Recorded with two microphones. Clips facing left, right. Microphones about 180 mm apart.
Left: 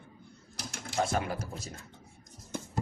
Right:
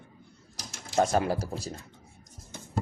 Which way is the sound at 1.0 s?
40° right (ahead or behind).